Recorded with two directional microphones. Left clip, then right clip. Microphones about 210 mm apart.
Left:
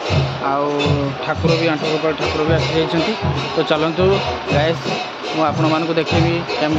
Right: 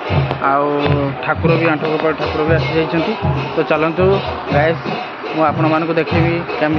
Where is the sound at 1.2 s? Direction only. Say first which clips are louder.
Right 2 dB; 5° left (ahead or behind).